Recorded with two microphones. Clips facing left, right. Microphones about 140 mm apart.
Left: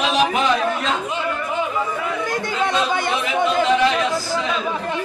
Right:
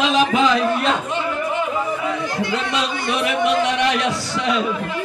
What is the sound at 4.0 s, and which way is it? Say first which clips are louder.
Speech: left 1 dB; 75° right (ahead or behind).